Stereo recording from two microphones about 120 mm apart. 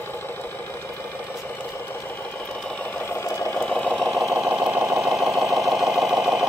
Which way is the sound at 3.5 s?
10° left (ahead or behind).